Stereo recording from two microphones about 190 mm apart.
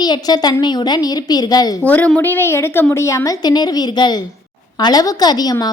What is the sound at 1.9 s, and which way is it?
A woman's voice, 10° left (ahead or behind).